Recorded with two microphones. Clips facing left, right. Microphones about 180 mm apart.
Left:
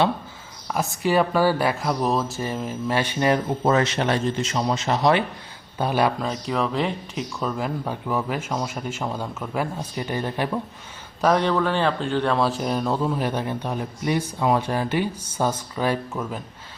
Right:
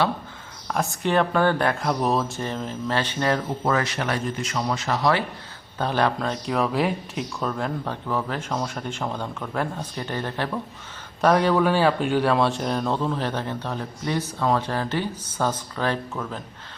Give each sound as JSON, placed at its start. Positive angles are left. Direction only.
{"t": 0.7, "sound": "speech", "side_deg": 0}
{"t": 5.7, "sound": "speech", "side_deg": 10}
{"t": 11.2, "sound": "speech", "side_deg": 0}